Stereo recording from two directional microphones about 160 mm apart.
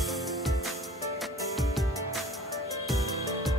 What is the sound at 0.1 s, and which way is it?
Music, centre (ahead or behind).